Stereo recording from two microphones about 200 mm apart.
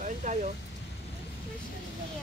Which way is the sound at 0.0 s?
35° right (ahead or behind).